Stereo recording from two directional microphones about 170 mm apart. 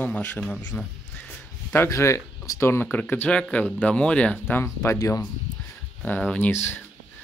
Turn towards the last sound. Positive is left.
turn(degrees=10)  # may be behind; listen again after turning